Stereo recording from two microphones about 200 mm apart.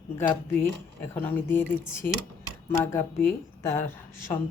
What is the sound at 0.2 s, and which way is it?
Speech, 10° left (ahead or behind).